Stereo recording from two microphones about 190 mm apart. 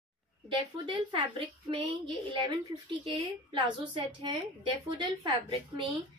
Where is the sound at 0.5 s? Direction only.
25° right (ahead or behind).